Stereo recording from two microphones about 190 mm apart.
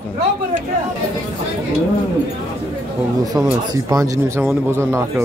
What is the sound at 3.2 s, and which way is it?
Speech, 20° right (ahead or behind).